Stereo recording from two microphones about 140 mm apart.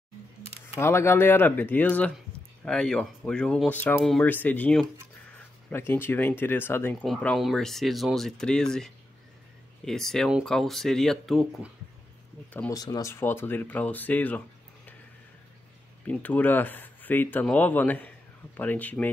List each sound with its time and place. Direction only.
0.7 s speech: 15° left (ahead or behind); by 11.7 s centre (ahead or behind)
12.7 s speech: 25° left (ahead or behind)
13.1 s speech: 15° left (ahead or behind)
16.1 s speech: 10° left (ahead or behind)